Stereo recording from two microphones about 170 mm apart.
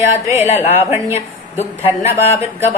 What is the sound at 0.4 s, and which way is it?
Speech, 40° left (ahead or behind).